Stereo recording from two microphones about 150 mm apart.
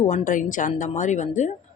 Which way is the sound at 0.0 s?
55° left (ahead or behind).